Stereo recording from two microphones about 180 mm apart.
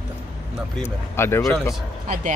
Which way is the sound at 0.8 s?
15° left (ahead or behind).